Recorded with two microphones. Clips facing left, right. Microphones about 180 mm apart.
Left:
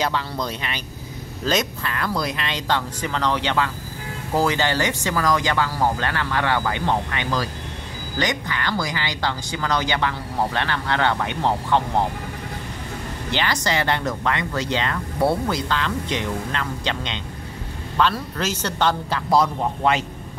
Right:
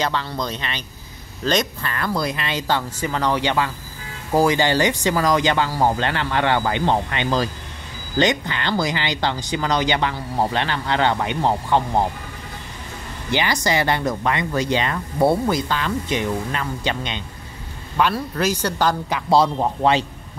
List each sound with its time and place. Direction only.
0.0 s speech: 5° left (ahead or behind); by 11.8 s 15° right (ahead or behind)
13.3 s speech: 10° right (ahead or behind)
19.3 s speech: 30° right (ahead or behind)